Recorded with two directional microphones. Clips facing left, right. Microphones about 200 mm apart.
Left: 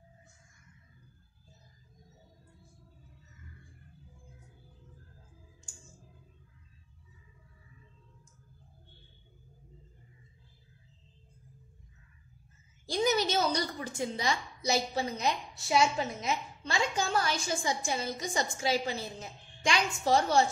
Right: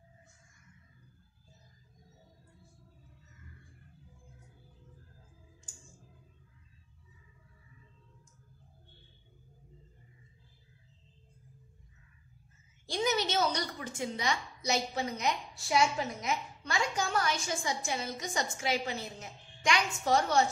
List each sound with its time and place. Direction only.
12.8 s a woman's voice: 40° left (ahead or behind)